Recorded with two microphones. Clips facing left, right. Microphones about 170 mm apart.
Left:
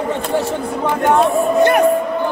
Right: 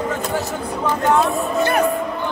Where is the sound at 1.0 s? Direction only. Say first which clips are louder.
Left 4 dB; 20° left (ahead or behind).